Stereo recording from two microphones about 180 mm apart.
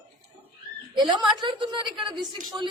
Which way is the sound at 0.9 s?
25° right (ahead or behind).